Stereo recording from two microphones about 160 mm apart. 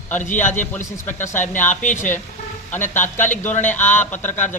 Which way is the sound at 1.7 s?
50° left (ahead or behind).